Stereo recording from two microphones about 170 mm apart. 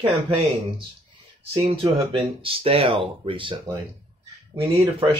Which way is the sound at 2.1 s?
30° right (ahead or behind).